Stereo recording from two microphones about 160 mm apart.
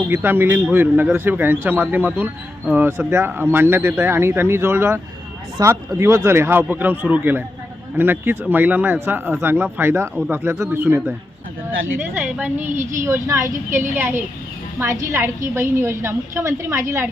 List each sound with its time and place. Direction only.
0.1 s a man's voice: 15° right (ahead or behind)